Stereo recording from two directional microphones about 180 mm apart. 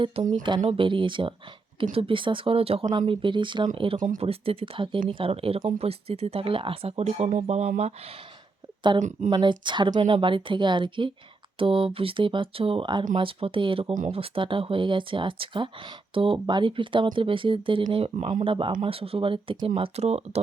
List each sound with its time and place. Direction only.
0.1 s speech: 30° right (ahead or behind)
3.1 s speech: 30° right (ahead or behind)
9.3 s speech: 25° right (ahead or behind)
18.4 s speech: 30° right (ahead or behind)